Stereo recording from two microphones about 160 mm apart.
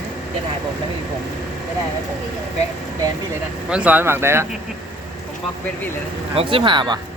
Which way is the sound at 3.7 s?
10° right (ahead or behind).